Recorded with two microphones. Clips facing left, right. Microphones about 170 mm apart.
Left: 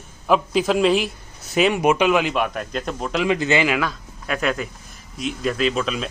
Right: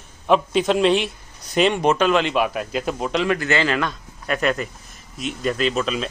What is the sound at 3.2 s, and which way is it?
Speech, 15° left (ahead or behind).